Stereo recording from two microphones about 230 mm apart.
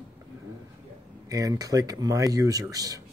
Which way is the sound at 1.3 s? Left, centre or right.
Centre.